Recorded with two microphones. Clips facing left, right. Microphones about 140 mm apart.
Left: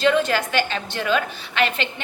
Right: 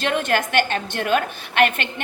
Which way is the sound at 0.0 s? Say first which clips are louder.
Left 2 dB; 50° right (ahead or behind).